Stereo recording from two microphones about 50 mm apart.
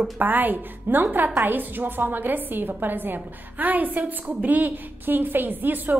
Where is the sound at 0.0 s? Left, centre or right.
Right.